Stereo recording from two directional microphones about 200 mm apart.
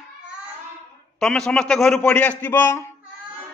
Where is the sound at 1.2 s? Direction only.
5° left (ahead or behind).